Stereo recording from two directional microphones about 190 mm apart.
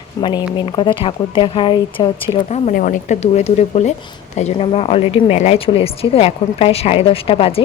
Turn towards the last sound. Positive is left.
turn(degrees=30)  # may be behind; listen again after turning